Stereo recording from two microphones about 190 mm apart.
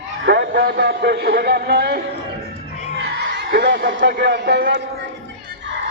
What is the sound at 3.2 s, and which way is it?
A man's voice, 65° right (ahead or behind).